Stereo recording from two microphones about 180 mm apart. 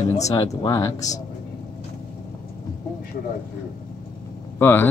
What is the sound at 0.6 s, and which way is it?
Speech, 20° left (ahead or behind).